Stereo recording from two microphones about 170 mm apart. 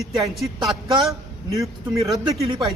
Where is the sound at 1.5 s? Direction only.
20° right (ahead or behind).